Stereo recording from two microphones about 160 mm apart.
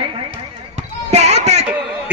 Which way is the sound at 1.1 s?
45° right (ahead or behind).